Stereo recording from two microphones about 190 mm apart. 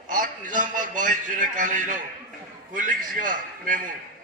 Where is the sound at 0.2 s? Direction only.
45° right (ahead or behind).